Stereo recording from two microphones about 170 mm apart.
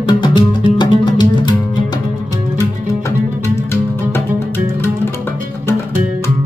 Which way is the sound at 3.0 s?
15° left (ahead or behind).